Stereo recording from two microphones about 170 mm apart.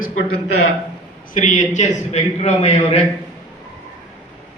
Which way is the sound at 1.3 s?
45° left (ahead or behind).